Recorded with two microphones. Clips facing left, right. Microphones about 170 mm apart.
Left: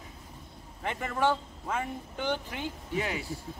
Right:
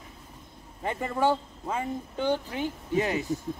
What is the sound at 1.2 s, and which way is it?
A man's voice, 15° right (ahead or behind).